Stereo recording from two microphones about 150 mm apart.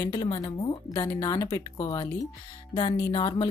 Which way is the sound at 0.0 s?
30° left (ahead or behind).